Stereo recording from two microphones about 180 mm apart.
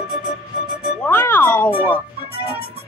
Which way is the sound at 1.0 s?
10° left (ahead or behind).